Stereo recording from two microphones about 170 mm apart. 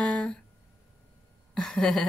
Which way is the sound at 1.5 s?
Centre (ahead or behind).